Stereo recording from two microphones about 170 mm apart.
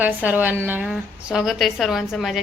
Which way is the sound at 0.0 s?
10° right (ahead or behind).